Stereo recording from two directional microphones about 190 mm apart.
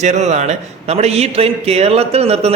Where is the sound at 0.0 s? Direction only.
35° right (ahead or behind).